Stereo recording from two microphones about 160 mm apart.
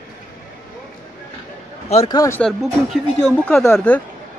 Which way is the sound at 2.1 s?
15° left (ahead or behind).